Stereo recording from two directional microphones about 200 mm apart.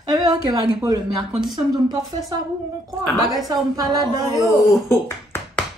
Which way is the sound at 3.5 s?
20° right (ahead or behind).